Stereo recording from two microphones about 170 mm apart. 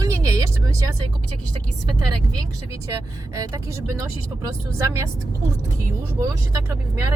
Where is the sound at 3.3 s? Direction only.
20° right (ahead or behind).